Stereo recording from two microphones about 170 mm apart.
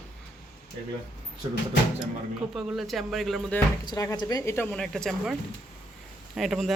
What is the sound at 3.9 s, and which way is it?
A woman's voice, 20° left (ahead or behind).